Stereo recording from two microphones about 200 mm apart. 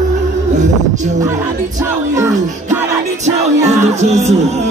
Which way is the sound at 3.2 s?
35° right (ahead or behind).